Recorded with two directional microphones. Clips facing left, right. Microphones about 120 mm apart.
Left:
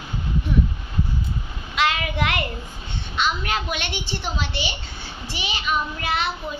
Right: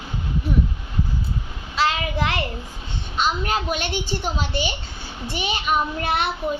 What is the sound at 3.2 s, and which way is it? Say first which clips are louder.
A child's voice: right 2 dB; 40° right (ahead or behind).